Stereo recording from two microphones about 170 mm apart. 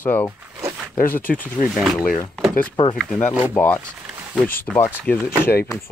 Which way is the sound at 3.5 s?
10° left (ahead or behind).